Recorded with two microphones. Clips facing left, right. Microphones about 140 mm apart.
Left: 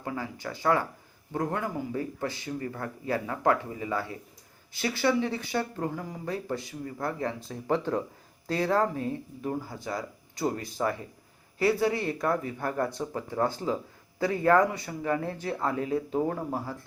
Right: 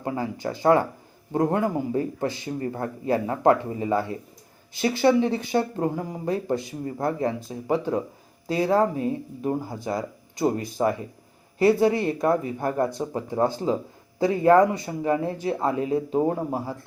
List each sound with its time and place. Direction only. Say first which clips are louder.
0.0 s speech: right 7 dB; 25° right (ahead or behind)